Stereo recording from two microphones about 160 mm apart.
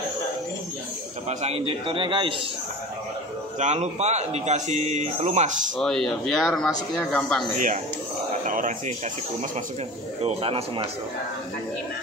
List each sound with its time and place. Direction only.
1.4 s a man's voice: 40° right (ahead or behind)
3.5 s speech: 45° right (ahead or behind)
5.8 s speech: centre (ahead or behind)
8.5 s speech: 55° right (ahead or behind)
10.2 s a man's voice: 35° right (ahead or behind)